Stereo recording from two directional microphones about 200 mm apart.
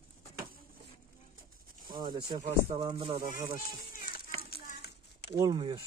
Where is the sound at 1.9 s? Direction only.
20° right (ahead or behind).